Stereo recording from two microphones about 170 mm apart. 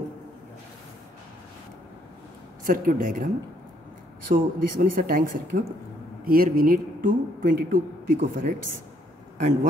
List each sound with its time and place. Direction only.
2.6 s speech: 50° right (ahead or behind)
4.3 s a man's voice: 55° right (ahead or behind)
9.4 s speech: 45° right (ahead or behind)